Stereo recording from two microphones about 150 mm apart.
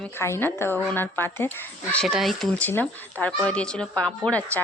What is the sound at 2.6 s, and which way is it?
A woman's voice, 10° left (ahead or behind).